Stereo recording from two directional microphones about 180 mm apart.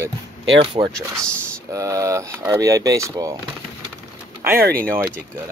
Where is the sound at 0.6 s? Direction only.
25° right (ahead or behind).